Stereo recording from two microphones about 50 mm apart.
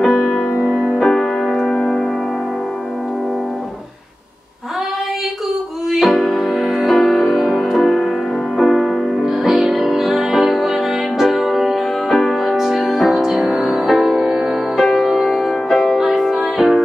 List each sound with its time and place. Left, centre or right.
0.0 s music: centre
0.6 s music: right
0.9 s music: centre
5.9 s music: centre
12.1 s music: centre
14.8 s music: centre